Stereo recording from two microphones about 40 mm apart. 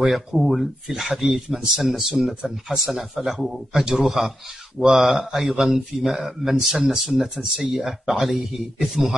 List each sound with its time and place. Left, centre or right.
0.1 s speech: centre
7.3 s speech: centre
7.7 s speech: centre